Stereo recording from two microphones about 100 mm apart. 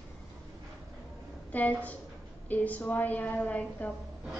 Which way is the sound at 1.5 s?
15° left (ahead or behind).